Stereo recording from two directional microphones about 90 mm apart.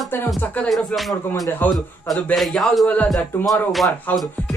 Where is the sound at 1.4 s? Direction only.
20° left (ahead or behind).